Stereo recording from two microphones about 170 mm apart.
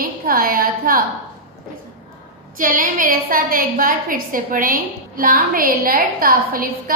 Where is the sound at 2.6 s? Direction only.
55° right (ahead or behind).